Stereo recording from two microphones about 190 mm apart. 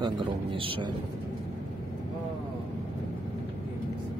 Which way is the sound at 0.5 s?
25° right (ahead or behind).